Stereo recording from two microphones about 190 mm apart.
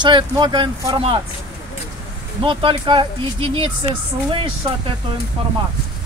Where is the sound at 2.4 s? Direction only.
25° right (ahead or behind).